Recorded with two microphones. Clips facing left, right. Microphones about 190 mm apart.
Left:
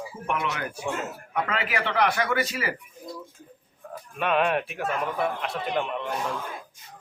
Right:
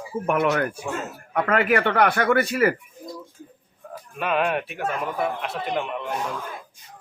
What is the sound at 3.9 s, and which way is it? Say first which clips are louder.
Speech: even; centre (ahead or behind).